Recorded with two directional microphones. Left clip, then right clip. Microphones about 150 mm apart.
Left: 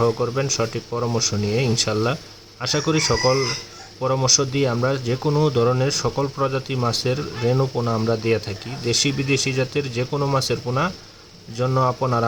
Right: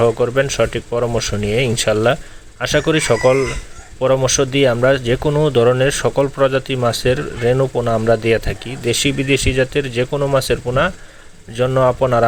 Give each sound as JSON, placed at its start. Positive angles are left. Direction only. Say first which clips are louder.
{"t": 0.0, "sound": "speech", "louder": "right 6 dB", "side_deg": -20}